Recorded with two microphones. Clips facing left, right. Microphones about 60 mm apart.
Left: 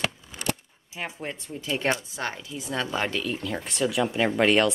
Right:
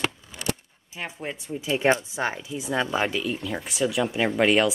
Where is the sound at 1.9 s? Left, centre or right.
Right.